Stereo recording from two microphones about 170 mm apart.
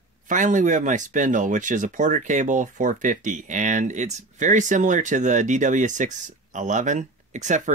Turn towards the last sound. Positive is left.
turn(degrees=-45)  # may be behind; listen again after turning